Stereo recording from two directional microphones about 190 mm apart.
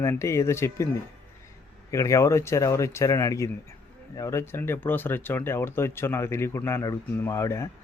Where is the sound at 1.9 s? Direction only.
15° left (ahead or behind).